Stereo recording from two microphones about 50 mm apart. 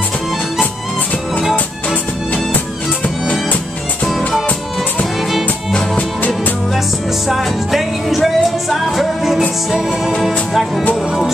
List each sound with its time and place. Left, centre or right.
5.9 s music: left
7.2 s music: centre